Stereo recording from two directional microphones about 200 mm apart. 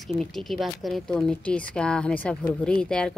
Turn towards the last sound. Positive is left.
turn(degrees=5)  # may be behind; listen again after turning